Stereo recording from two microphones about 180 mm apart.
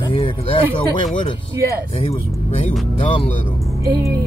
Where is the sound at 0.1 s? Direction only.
30° left (ahead or behind).